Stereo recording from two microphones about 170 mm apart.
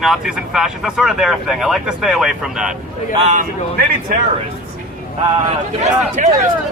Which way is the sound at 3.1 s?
35° right (ahead or behind).